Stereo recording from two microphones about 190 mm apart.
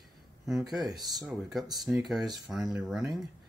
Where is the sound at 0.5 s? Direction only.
Centre (ahead or behind).